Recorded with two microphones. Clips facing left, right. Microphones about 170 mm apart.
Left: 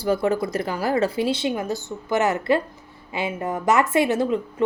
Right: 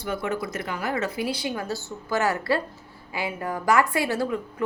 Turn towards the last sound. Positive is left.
turn(degrees=20)  # may be behind; listen again after turning